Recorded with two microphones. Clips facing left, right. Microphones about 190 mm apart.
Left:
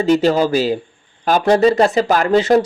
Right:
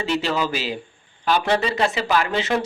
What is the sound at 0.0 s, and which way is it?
Speech, 45° left (ahead or behind).